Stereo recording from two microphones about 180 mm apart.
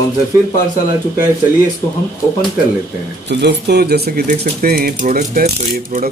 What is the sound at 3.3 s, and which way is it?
Speech, 70° right (ahead or behind).